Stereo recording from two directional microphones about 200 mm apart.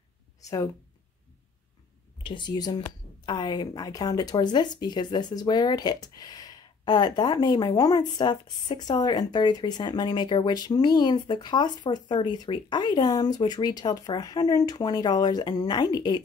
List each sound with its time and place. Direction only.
0.4 s speech: 15° left (ahead or behind)
2.2 s speech: 20° left (ahead or behind)